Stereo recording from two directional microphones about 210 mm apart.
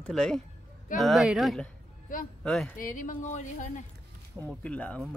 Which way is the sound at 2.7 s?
40° left (ahead or behind).